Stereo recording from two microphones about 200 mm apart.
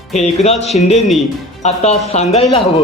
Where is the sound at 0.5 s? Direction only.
Centre (ahead or behind).